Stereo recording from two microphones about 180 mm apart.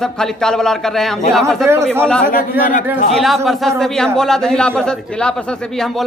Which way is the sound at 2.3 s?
45° left (ahead or behind).